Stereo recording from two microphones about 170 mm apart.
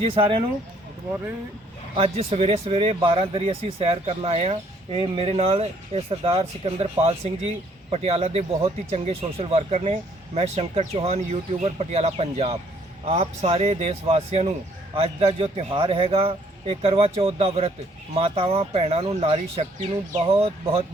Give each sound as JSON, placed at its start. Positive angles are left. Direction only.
{"t": 0.0, "sound": "speech", "side_deg": -35}
{"t": 2.0, "sound": "speech", "side_deg": -35}